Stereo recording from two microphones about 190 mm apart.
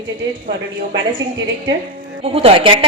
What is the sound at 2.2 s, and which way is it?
Speech, 30° right (ahead or behind).